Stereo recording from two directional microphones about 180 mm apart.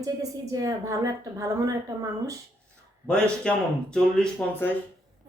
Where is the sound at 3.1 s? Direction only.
5° left (ahead or behind).